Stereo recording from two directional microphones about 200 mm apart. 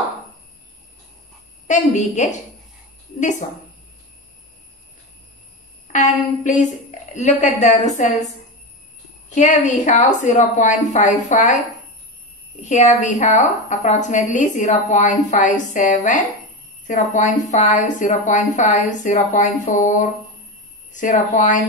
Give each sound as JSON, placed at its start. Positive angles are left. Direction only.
{"t": 1.7, "sound": "a woman's voice", "side_deg": 35}
{"t": 5.9, "sound": "a woman's voice", "side_deg": 40}
{"t": 9.3, "sound": "a woman's voice", "side_deg": 35}
{"t": 12.6, "sound": "a woman's voice", "side_deg": 35}